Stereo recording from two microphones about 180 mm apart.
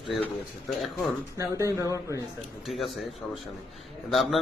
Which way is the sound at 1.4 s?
15° right (ahead or behind).